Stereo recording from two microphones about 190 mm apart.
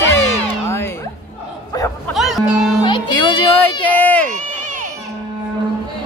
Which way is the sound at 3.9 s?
10° left (ahead or behind).